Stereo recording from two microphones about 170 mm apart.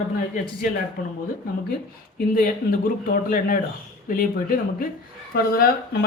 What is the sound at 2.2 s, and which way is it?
Speech, 55° left (ahead or behind).